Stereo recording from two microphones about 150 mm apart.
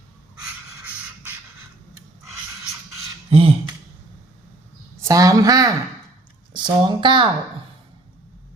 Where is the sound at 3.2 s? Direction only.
40° right (ahead or behind).